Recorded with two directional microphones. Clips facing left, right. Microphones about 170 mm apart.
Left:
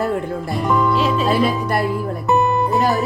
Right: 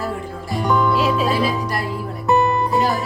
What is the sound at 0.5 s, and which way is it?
Music, centre (ahead or behind).